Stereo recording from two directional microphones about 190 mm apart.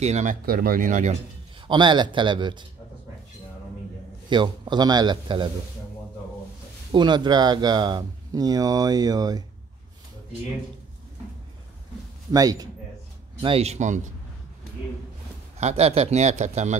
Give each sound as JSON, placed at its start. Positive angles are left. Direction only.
{"t": 0.0, "sound": "speech", "side_deg": -40}
{"t": 1.7, "sound": "speech", "side_deg": -25}
{"t": 4.3, "sound": "speech", "side_deg": -25}
{"t": 6.9, "sound": "speech", "side_deg": -25}
{"t": 12.3, "sound": "speech", "side_deg": -20}
{"t": 13.4, "sound": "a man's voice", "side_deg": -30}
{"t": 15.6, "sound": "a man's voice", "side_deg": -30}